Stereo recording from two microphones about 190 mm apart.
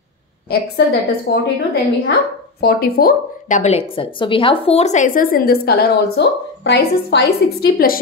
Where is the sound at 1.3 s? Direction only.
65° left (ahead or behind).